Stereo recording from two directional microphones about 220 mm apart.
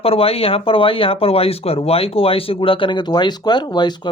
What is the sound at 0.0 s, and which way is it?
Speech, 25° left (ahead or behind).